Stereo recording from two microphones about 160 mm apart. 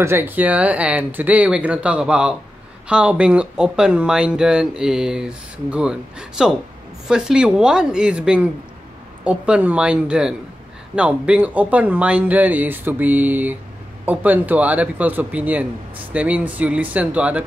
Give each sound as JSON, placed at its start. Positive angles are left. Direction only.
{"t": 0.0, "sound": "speech", "side_deg": -15}